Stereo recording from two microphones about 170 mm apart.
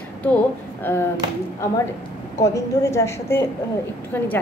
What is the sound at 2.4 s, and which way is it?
A woman's voice, 20° left (ahead or behind).